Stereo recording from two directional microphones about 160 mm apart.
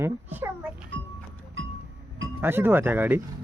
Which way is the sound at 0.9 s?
90° right.